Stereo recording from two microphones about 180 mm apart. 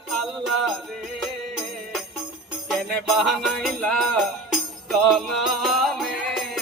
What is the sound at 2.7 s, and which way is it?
Music, centre (ahead or behind).